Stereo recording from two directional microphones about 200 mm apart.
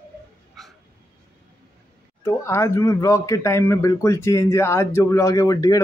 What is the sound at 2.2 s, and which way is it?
Speech, 15° left (ahead or behind).